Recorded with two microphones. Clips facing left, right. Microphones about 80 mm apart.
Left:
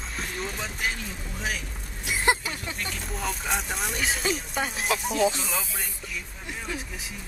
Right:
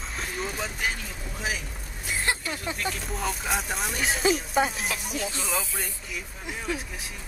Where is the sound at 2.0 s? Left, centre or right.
Centre.